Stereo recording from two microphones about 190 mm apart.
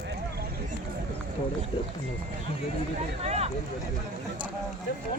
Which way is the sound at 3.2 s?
35° right (ahead or behind).